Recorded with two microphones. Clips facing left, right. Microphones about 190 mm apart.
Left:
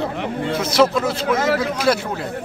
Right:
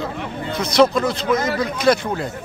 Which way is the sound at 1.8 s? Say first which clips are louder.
Right 2 dB; 5° left (ahead or behind).